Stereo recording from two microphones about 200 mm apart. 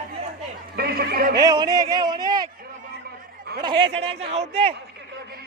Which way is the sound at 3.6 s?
25° right (ahead or behind).